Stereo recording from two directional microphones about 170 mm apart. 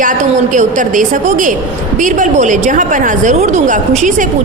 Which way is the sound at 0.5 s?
50° right (ahead or behind).